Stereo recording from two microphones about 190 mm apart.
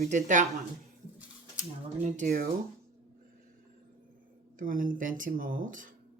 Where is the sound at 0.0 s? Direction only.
40° right (ahead or behind).